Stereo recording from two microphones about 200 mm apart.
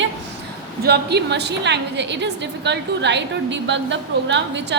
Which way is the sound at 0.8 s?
55° right (ahead or behind).